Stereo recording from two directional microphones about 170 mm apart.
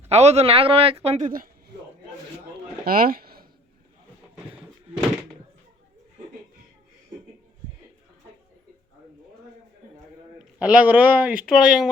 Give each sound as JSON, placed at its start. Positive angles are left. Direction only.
{"t": 0.1, "sound": "speech", "side_deg": -40}
{"t": 2.8, "sound": "speech", "side_deg": -60}
{"t": 10.3, "sound": "speech", "side_deg": -5}